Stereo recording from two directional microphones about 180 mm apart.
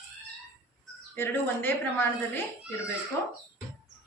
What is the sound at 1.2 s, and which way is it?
Speech, 10° left (ahead or behind).